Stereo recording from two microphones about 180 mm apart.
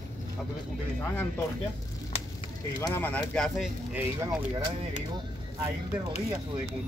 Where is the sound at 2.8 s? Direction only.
10° left (ahead or behind).